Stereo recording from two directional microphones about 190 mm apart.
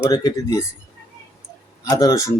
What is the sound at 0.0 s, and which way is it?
Speech, 20° left (ahead or behind).